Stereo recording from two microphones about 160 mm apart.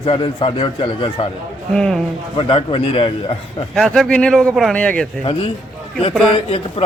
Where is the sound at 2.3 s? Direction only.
35° left (ahead or behind).